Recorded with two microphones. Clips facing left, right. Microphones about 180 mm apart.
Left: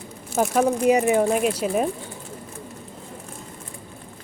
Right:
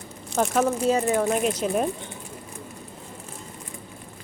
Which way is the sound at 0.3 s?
5° left (ahead or behind).